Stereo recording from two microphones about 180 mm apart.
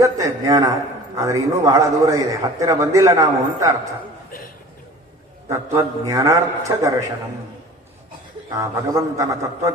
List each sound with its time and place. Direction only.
0.0 s a man's voice: 20° right (ahead or behind)
5.7 s a man's voice: 15° right (ahead or behind)
8.5 s a man's voice: 20° right (ahead or behind)